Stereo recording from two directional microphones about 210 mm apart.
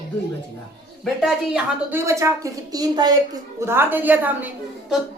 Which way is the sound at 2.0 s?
15° right (ahead or behind).